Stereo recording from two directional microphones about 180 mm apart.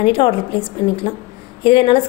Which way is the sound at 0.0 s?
30° left (ahead or behind).